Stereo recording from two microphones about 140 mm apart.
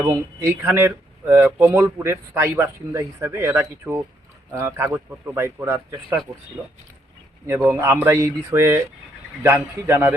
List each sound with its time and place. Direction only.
0.2 s speech: 20° right (ahead or behind)
7.4 s a man's voice: 20° right (ahead or behind)